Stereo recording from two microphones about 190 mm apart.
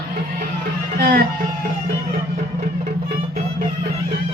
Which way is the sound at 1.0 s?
55° right (ahead or behind).